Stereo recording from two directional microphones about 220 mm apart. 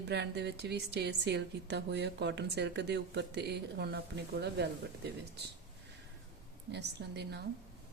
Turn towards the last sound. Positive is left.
turn(degrees=-50)  # may be behind; listen again after turning